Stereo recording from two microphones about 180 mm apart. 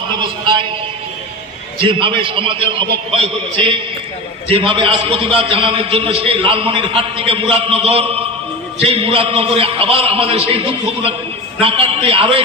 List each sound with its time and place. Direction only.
0.2 s a man's voice: 25° right (ahead or behind)
1.8 s a man's voice: 30° right (ahead or behind)